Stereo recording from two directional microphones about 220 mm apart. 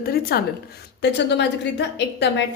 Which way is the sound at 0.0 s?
45° left (ahead or behind).